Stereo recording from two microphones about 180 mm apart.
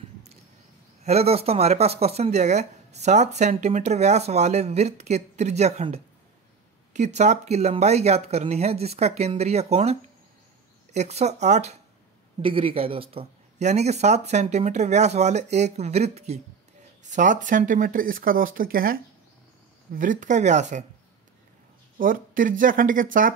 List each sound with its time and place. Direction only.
1.0 s speech: 35° right (ahead or behind)
7.2 s speech: 40° right (ahead or behind)
21.9 s speech: 50° right (ahead or behind)